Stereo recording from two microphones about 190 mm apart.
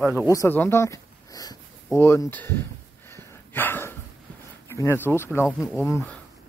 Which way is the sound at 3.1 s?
10° left (ahead or behind).